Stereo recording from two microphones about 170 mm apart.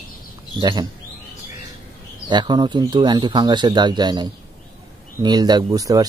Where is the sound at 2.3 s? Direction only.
25° right (ahead or behind).